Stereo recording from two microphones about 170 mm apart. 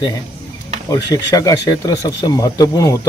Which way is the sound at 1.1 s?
20° left (ahead or behind).